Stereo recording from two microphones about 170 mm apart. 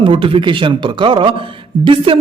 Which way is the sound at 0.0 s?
30° right (ahead or behind).